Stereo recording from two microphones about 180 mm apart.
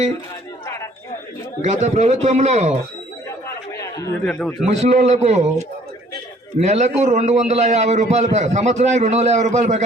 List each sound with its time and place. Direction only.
1.6 s a man's voice: 40° right (ahead or behind)
3.8 s a sound: 20° left (ahead or behind)
4.3 s a man's voice: 5° left (ahead or behind)
4.7 s a man's voice: 40° right (ahead or behind)
6.6 s a man's voice: 40° right (ahead or behind)